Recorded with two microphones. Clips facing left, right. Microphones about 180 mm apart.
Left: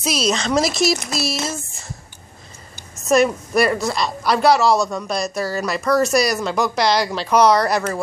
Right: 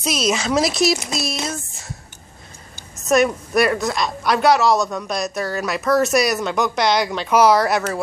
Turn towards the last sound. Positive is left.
turn(degrees=0)  # may be behind; listen again after turning